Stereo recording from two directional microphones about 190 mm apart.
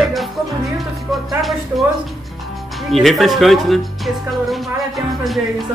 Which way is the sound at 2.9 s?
Centre (ahead or behind).